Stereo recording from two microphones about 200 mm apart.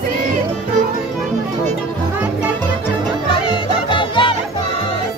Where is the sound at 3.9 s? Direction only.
25° left (ahead or behind).